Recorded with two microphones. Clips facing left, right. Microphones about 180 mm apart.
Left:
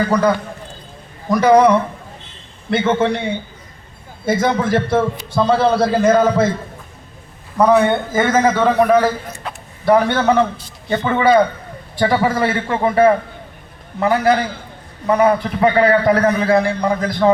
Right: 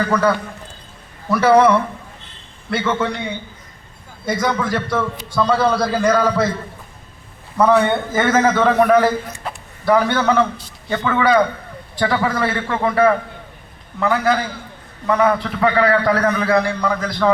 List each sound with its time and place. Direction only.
0.1 s a man's voice: 15° left (ahead or behind)
4.3 s a man's voice: 25° left (ahead or behind)
7.6 s a man's voice: 15° left (ahead or behind)
9.8 s a man's voice: 25° left (ahead or behind)
15.0 s a man's voice: 25° left (ahead or behind)